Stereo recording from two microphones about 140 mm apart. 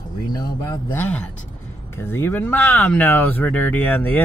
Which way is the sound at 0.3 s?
30° left (ahead or behind).